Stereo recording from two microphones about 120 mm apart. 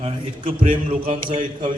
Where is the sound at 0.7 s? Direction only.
50° right (ahead or behind).